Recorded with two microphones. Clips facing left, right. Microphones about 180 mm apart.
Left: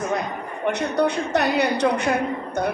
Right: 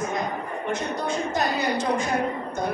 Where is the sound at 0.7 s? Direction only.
70° left (ahead or behind).